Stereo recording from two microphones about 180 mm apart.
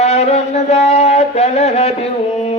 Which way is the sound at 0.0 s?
35° left (ahead or behind).